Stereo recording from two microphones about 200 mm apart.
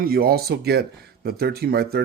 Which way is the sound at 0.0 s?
50° right (ahead or behind).